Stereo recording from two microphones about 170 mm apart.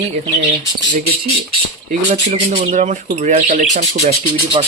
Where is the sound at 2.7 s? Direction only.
45° right (ahead or behind).